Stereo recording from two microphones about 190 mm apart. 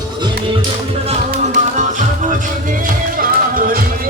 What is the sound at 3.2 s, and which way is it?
Music, 50° right (ahead or behind).